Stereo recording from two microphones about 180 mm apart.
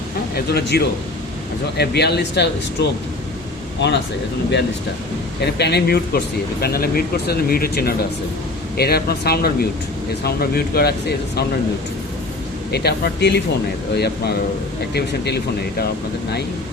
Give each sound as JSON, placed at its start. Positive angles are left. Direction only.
{"t": 0.3, "sound": "speech", "side_deg": 65}
{"t": 5.5, "sound": "speech", "side_deg": 65}
{"t": 12.7, "sound": "speech", "side_deg": 65}